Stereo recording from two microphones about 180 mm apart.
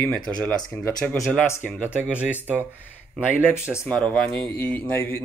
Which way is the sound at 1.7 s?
5° right (ahead or behind).